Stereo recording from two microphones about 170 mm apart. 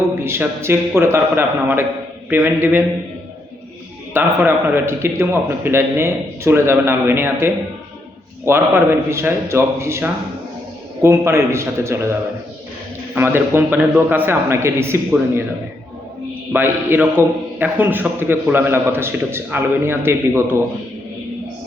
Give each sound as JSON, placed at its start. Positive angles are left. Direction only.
{"t": 0.2, "sound": "a man's voice", "side_deg": -15}
{"t": 4.1, "sound": "a man's voice", "side_deg": -10}
{"t": 13.1, "sound": "a man's voice", "side_deg": -15}
{"t": 16.5, "sound": "a man's voice", "side_deg": -10}